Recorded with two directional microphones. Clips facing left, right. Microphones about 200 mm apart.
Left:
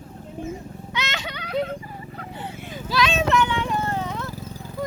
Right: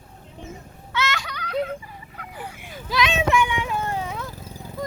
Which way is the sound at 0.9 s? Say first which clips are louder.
Right 4 dB; 20° left (ahead or behind).